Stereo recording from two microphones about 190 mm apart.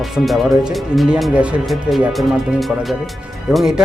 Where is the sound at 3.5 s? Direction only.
5° right (ahead or behind).